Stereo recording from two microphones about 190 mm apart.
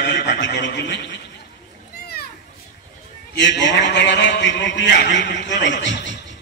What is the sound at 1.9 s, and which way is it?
Children playing, 55° left (ahead or behind).